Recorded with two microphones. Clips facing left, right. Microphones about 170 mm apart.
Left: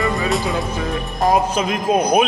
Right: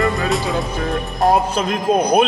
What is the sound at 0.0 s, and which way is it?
Speech, centre (ahead or behind).